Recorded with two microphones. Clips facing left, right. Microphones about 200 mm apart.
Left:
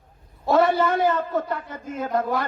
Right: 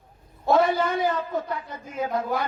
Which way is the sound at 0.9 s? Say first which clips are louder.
Left 3 dB; 55° left (ahead or behind).